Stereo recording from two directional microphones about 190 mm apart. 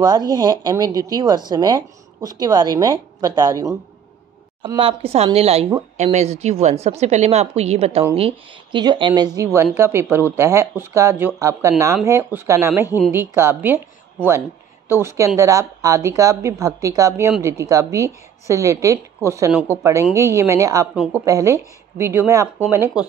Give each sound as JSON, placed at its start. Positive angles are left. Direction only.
{"t": 0.0, "sound": "speech", "side_deg": -20}
{"t": 4.7, "sound": "a woman's voice", "side_deg": -30}
{"t": 14.9, "sound": "a woman's voice", "side_deg": -15}